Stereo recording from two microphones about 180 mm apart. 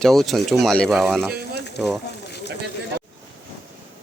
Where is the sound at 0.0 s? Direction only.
Centre (ahead or behind).